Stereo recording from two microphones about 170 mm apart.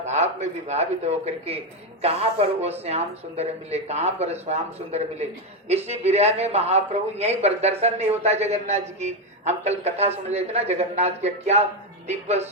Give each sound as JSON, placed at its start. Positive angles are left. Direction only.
{"t": 0.0, "sound": "a man's voice", "side_deg": -40}